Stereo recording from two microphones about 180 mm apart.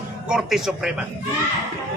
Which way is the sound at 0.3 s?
5° right (ahead or behind).